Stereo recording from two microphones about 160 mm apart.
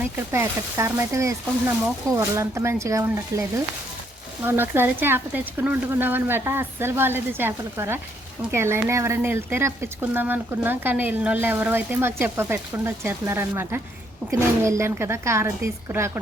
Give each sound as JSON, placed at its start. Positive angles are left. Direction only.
{"t": 0.3, "sound": "speech", "side_deg": -15}
{"t": 4.4, "sound": "speech", "side_deg": -15}